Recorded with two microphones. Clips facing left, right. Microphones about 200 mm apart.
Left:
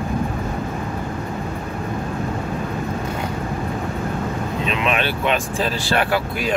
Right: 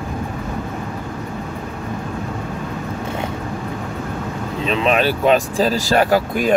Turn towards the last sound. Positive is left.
turn(degrees=-45)  # may be behind; listen again after turning